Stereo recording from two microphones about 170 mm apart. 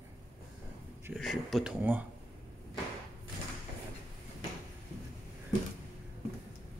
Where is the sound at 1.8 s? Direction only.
10° right (ahead or behind).